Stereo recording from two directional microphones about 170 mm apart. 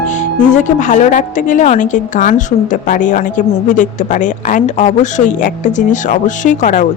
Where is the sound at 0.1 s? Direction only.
45° left (ahead or behind).